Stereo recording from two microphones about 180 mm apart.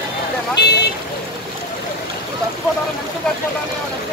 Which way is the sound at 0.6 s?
65° left (ahead or behind).